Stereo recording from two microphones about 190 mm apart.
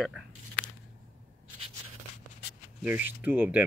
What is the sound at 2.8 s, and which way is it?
Speech, 10° right (ahead or behind).